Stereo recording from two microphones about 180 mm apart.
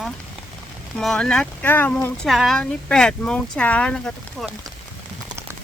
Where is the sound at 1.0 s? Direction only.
5° left (ahead or behind).